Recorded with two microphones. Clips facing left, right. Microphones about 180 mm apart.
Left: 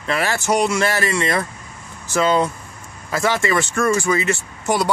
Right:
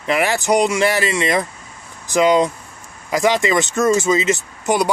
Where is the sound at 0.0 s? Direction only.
15° right (ahead or behind).